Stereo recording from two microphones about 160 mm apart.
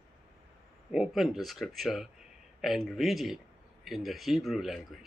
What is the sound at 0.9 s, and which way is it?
A man's voice, 5° right (ahead or behind).